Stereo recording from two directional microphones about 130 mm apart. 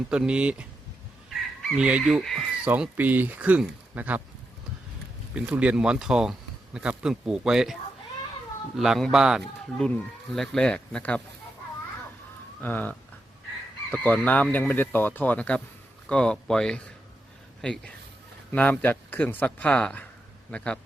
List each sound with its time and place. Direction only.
0.1 s speech: 10° right (ahead or behind)
1.3 s fowl: 10° right (ahead or behind)
2.6 s speech: 10° right (ahead or behind)
5.3 s a man's voice: 10° right (ahead or behind); by 11.2 s 10° left (ahead or behind)
12.6 s a man's voice: 15° left (ahead or behind)